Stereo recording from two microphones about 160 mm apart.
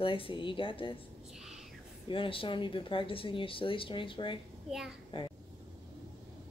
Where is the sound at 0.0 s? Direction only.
35° left (ahead or behind).